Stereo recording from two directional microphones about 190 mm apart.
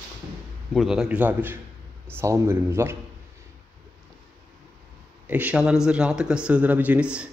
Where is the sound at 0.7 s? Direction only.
5° right (ahead or behind).